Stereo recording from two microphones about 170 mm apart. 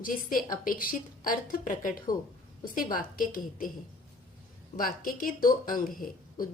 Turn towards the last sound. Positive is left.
turn(degrees=55)  # may be behind; listen again after turning